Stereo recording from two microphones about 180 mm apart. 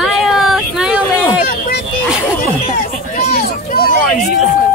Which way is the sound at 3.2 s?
55° left (ahead or behind).